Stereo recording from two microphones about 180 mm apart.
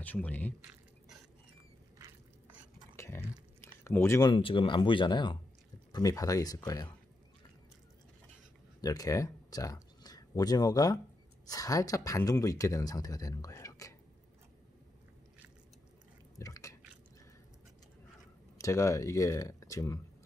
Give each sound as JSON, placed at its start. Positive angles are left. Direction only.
{"t": 0.0, "sound": "speech", "side_deg": 10}
{"t": 2.0, "sound": "a sound", "side_deg": -20}
{"t": 3.6, "sound": "speech", "side_deg": 15}
{"t": 8.8, "sound": "speech", "side_deg": 20}
{"t": 16.3, "sound": "drip", "side_deg": 20}
{"t": 18.6, "sound": "speech", "side_deg": 15}